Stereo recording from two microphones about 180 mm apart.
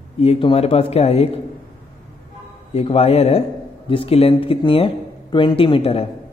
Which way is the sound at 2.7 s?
35° left (ahead or behind).